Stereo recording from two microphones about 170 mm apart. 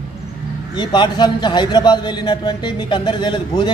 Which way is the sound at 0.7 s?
25° left (ahead or behind).